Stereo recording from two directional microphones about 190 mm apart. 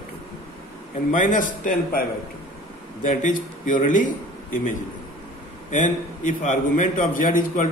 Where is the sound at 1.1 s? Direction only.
45° left (ahead or behind).